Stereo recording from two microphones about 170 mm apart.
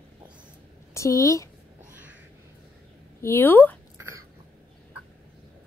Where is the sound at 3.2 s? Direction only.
15° left (ahead or behind).